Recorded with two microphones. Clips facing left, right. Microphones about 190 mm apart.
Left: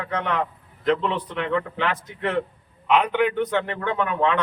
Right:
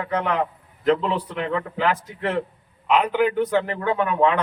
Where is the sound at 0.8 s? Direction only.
5° right (ahead or behind).